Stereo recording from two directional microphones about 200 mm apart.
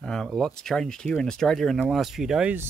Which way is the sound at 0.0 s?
5° left (ahead or behind).